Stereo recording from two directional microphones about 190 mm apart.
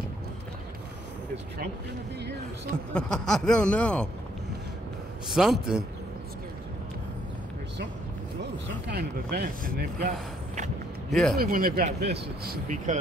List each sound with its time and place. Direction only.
2.9 s speech: 5° left (ahead or behind)
5.3 s speech: centre (ahead or behind)
8.8 s speech: 55° right (ahead or behind)
11.1 s a man's voice: centre (ahead or behind)
11.3 s speech: 50° right (ahead or behind)